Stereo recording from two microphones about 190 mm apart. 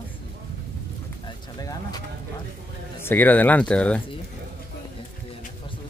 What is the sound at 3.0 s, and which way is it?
Speech, 10° left (ahead or behind).